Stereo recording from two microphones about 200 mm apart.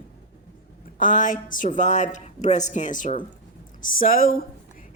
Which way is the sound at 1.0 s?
40° left (ahead or behind).